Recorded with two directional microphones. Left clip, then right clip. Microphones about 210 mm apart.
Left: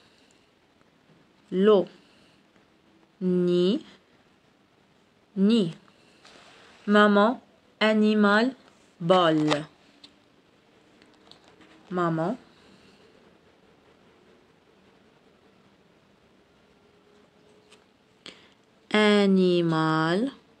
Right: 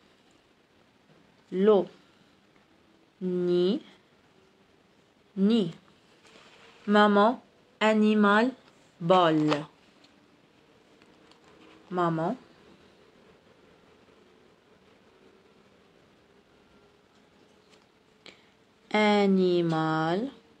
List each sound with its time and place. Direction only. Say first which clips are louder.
1.5 s speech: left 2 dB; 40° left (ahead or behind)
3.3 s speech: left 2 dB; 40° left (ahead or behind)
5.4 s speech: left 2 dB; 40° left (ahead or behind)
6.9 s speech: left 2 dB; 30° left (ahead or behind)
7.8 s speech: left 1 dB; 20° left (ahead or behind)
11.9 s speech: left 1 dB; 25° left (ahead or behind)
18.9 s speech: left 2 dB; 45° left (ahead or behind)